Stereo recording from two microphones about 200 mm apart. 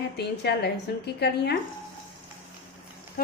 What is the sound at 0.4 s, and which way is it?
Speech, 55° left (ahead or behind).